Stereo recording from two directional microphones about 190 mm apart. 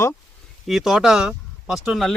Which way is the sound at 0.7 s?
Centre (ahead or behind).